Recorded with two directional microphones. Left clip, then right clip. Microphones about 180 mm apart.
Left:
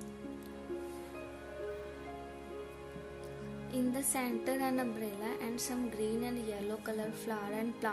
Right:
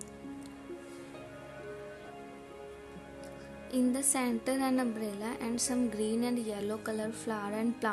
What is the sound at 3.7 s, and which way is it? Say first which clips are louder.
A woman's voice: right 5 dB; 15° right (ahead or behind).